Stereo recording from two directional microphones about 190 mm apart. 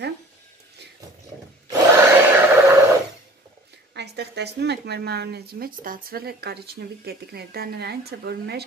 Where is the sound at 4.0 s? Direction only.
60° right (ahead or behind).